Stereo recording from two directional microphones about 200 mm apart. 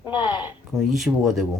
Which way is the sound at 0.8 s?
Centre (ahead or behind).